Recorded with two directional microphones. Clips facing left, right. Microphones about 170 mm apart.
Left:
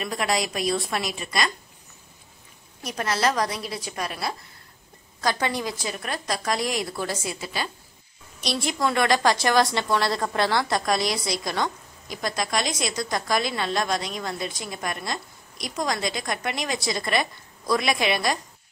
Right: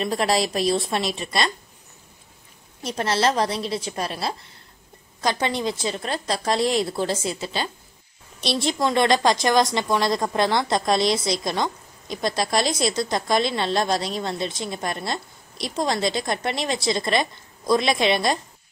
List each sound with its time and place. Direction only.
0.0 s a woman's voice: 30° right (ahead or behind)
2.8 s a woman's voice: 30° right (ahead or behind)